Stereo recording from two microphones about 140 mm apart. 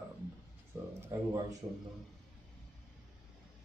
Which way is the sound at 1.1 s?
25° right (ahead or behind).